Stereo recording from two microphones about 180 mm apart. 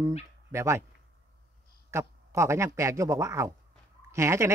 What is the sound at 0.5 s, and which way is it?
Speech, 15° right (ahead or behind).